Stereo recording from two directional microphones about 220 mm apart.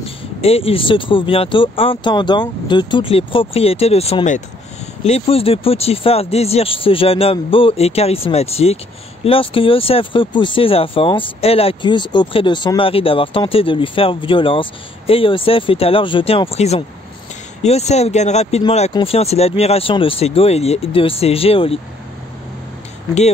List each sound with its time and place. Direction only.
0.0 s speech: 25° left (ahead or behind)